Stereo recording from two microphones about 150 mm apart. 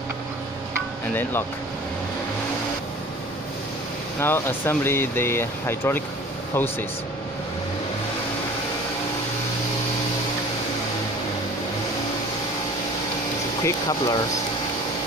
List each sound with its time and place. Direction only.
4.2 s speech: 15° left (ahead or behind)
13.7 s speech: 25° left (ahead or behind)